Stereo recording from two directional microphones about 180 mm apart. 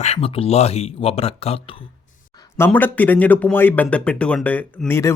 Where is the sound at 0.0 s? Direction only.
35° left (ahead or behind).